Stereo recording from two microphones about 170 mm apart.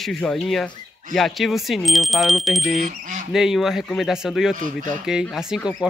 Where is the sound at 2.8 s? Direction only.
45° right (ahead or behind).